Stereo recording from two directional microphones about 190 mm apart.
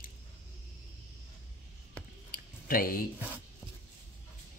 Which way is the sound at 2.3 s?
50° left (ahead or behind).